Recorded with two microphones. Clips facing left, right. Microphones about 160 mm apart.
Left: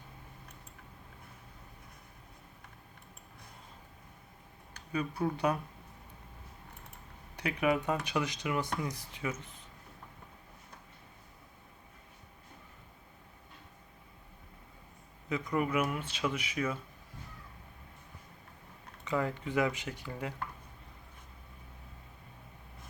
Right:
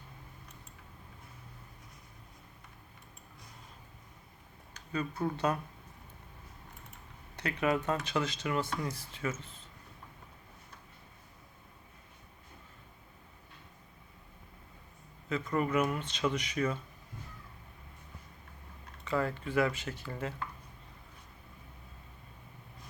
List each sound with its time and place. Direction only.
4.9 s speech: 10° left (ahead or behind)
7.3 s speech: 15° left (ahead or behind)
15.3 s speech: 15° left (ahead or behind)
19.0 s speech: 15° left (ahead or behind)